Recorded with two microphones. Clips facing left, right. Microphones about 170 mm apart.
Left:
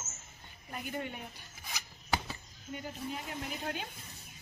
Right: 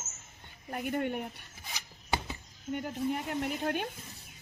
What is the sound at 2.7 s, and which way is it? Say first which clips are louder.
A woman's voice: right 8 dB; 60° right (ahead or behind).